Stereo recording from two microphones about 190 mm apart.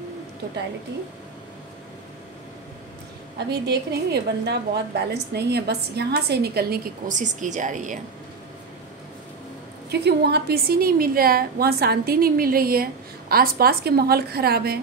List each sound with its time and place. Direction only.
3.6 s a woman's voice: 60° right (ahead or behind); by 8.0 s 40° right (ahead or behind)
9.8 s a woman's voice: 60° right (ahead or behind)